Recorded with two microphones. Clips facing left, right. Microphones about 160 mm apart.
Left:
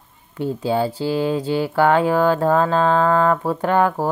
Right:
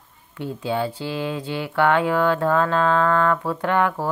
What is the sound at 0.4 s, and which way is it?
Speech, 35° left (ahead or behind).